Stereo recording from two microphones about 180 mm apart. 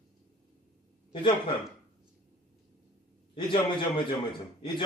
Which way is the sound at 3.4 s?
25° left (ahead or behind).